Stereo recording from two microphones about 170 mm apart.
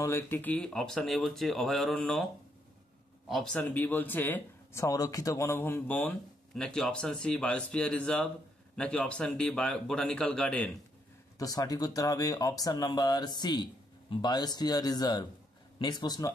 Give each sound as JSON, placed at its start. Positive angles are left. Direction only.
{"t": 0.0, "sound": "speech", "side_deg": 15}
{"t": 3.3, "sound": "speech", "side_deg": 0}
{"t": 11.3, "sound": "speech", "side_deg": 20}